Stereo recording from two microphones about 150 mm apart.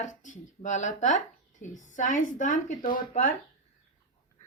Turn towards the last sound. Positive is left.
turn(degrees=60)  # may be behind; listen again after turning